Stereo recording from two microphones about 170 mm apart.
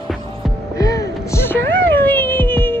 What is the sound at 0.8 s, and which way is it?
Music, 20° left (ahead or behind).